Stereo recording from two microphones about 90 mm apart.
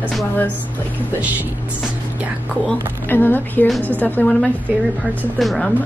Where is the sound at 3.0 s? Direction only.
20° left (ahead or behind).